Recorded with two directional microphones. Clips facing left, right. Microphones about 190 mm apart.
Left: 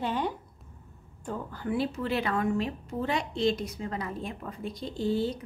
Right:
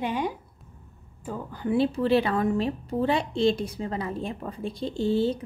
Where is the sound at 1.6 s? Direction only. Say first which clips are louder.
Right 7 dB; 25° right (ahead or behind).